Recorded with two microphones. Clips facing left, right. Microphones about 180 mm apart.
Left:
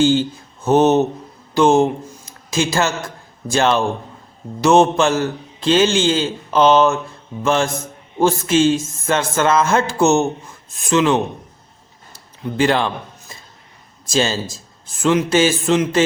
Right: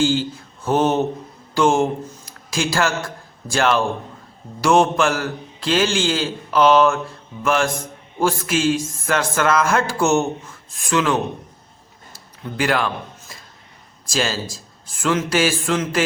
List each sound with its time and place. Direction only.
0.0 s a man's voice: 20° left (ahead or behind)
12.5 s a man's voice: 25° left (ahead or behind)